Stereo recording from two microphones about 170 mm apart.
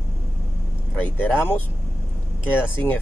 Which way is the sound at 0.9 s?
10° left (ahead or behind).